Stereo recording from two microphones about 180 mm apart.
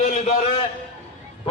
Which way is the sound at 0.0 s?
40° left (ahead or behind).